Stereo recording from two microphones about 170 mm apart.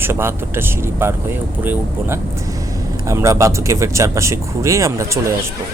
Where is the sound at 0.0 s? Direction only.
15° right (ahead or behind).